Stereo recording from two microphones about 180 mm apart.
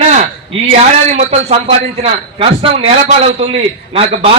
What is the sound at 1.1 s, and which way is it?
A man's voice, 35° right (ahead or behind).